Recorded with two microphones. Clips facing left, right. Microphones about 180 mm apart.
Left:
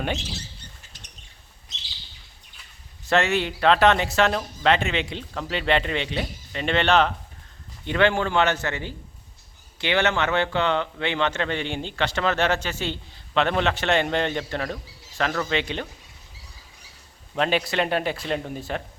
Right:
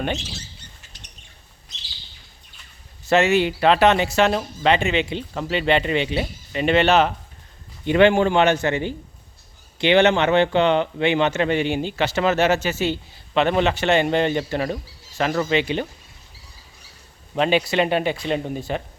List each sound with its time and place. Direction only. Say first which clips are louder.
3.1 s speech: right 5 dB; 5° right (ahead or behind)
17.3 s speech: right 4 dB; centre (ahead or behind)